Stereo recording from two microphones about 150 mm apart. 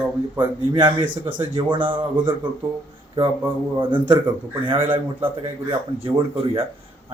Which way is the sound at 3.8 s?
35° right (ahead or behind).